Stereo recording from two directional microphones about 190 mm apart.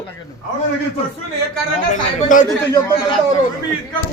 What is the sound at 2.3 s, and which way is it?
Speech, 45° left (ahead or behind).